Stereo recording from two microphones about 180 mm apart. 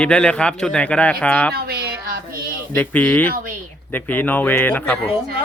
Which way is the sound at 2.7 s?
10° left (ahead or behind).